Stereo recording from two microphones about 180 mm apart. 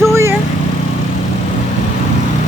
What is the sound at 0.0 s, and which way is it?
Vehicle, 15° right (ahead or behind).